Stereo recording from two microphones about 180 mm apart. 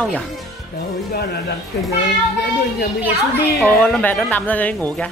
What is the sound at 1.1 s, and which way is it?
Speech, 60° left (ahead or behind).